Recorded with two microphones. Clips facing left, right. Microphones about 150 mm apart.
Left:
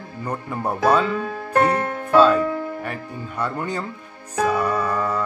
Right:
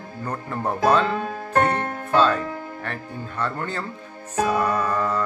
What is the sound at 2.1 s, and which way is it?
Speech, 10° left (ahead or behind).